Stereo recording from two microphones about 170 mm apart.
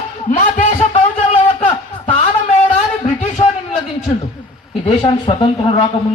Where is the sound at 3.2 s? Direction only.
40° left (ahead or behind).